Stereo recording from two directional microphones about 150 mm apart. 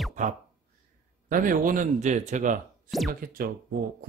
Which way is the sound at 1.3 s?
65° right (ahead or behind).